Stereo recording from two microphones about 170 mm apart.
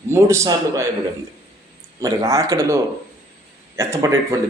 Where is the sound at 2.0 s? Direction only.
20° right (ahead or behind).